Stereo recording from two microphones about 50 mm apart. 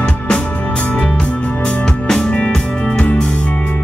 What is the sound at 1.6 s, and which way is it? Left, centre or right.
Music, centre.